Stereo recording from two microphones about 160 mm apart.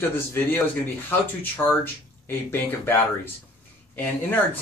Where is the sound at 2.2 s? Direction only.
15° left (ahead or behind).